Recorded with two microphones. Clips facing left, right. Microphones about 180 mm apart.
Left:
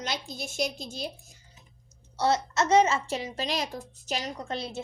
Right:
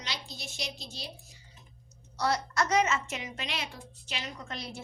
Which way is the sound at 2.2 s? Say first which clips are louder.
Left 4 dB; 25° left (ahead or behind).